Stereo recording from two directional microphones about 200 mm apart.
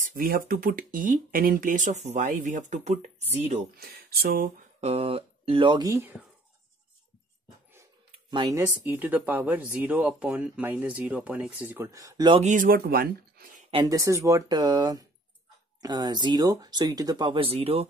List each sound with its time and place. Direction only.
0.1 s speech: 45° right (ahead or behind)
3.7 s speech: 50° right (ahead or behind)
4.7 s speech: 30° right (ahead or behind)
8.3 s speech: 20° right (ahead or behind)
12.4 s speech: 40° right (ahead or behind)
13.7 s speech: 20° right (ahead or behind)